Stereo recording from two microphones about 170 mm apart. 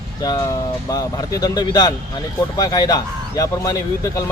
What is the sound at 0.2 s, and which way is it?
Speech, 20° left (ahead or behind).